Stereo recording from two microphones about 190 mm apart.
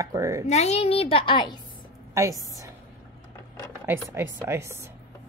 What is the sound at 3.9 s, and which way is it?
Speech, 10° right (ahead or behind).